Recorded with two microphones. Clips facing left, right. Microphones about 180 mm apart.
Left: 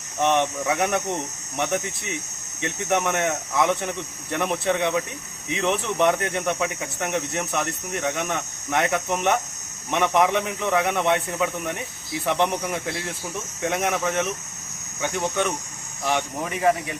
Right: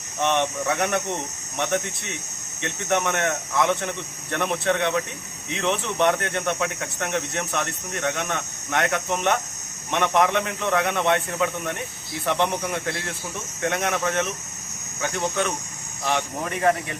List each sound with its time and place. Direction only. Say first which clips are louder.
0.2 s speech: left 2 dB; 5° left (ahead or behind)